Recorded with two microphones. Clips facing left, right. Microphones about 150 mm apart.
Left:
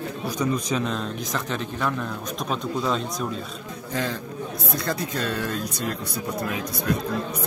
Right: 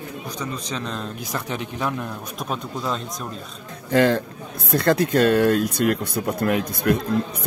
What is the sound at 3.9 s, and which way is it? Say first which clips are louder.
Speech: right 11 dB; 65° right (ahead or behind).